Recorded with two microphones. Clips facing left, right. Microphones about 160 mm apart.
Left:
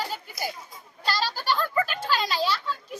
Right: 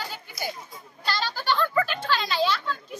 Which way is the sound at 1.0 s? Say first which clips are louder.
Left 1 dB; 35° left (ahead or behind).